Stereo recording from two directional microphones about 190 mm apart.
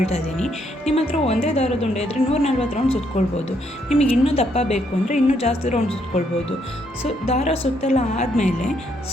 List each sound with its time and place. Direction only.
0.9 s a woman's voice: 35° left (ahead or behind)